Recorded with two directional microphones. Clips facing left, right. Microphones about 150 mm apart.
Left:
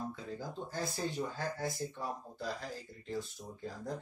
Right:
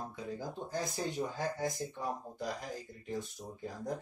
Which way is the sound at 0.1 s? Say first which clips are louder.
Right 2 dB; 20° right (ahead or behind).